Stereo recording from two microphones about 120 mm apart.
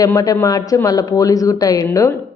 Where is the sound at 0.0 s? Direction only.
30° left (ahead or behind).